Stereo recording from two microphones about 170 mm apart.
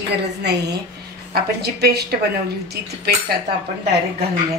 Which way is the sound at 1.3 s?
70° right (ahead or behind).